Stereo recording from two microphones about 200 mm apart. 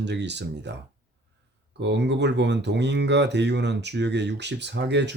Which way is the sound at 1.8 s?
60° right (ahead or behind).